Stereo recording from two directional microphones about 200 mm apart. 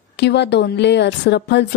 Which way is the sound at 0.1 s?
60° left (ahead or behind).